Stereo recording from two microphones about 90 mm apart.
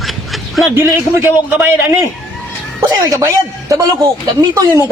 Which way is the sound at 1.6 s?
25° right (ahead or behind).